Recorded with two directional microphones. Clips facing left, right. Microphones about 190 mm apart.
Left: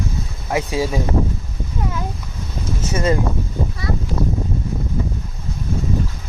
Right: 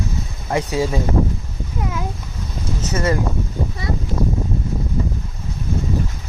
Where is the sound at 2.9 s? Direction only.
15° left (ahead or behind).